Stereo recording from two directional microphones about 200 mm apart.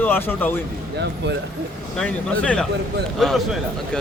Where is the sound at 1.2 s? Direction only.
60° right (ahead or behind).